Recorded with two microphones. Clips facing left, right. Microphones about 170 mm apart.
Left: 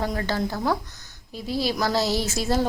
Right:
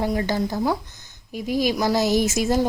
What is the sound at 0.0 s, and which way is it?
Speech, 15° right (ahead or behind).